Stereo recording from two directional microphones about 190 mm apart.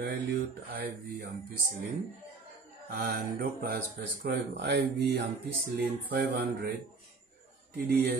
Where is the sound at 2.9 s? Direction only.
50° right (ahead or behind).